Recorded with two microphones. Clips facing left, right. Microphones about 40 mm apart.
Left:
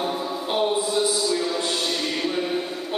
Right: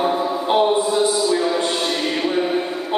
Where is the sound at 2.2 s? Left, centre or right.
Centre.